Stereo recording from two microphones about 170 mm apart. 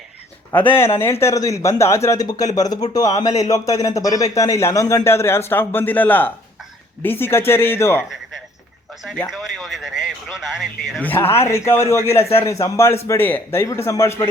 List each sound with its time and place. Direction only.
1.2 s a man's voice: 20° left (ahead or behind)
9.3 s speech: centre (ahead or behind)
11.0 s a man's voice: 10° left (ahead or behind)